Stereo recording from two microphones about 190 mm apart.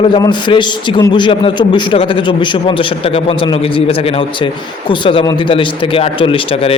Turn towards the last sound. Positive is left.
turn(degrees=30)  # may be behind; listen again after turning